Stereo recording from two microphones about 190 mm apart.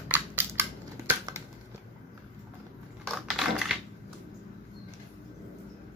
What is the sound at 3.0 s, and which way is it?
Crushing, centre (ahead or behind).